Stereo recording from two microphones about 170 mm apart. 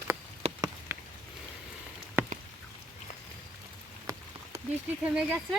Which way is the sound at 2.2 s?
10° right (ahead or behind).